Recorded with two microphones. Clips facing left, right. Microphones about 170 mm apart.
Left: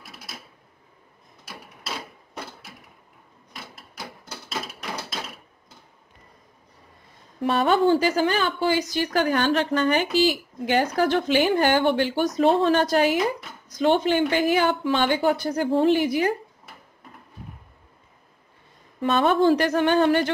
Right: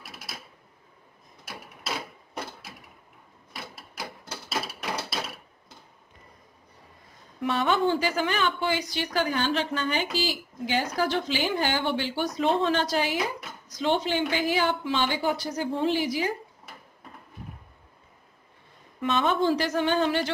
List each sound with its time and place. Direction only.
7.3 s a woman's voice: 35° left (ahead or behind); by 16.3 s 55° left (ahead or behind)
18.9 s speech: 35° left (ahead or behind)
19.2 s speech: 60° left (ahead or behind)